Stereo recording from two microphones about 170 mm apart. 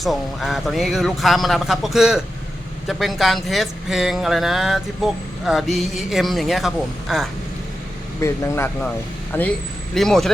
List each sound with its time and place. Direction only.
0.0 s speech: centre (ahead or behind)
8.2 s speech: 15° left (ahead or behind)